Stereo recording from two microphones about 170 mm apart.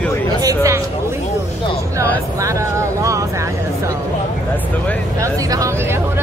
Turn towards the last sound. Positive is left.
turn(degrees=-20)  # may be behind; listen again after turning